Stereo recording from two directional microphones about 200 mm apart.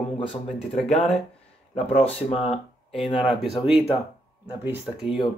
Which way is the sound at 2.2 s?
30° left (ahead or behind).